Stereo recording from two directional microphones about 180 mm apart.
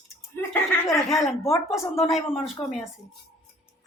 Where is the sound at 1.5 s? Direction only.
15° left (ahead or behind).